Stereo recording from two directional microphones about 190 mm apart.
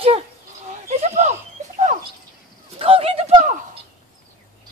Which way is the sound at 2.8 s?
30° right (ahead or behind).